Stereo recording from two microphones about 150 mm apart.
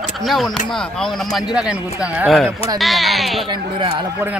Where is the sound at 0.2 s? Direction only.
Centre (ahead or behind).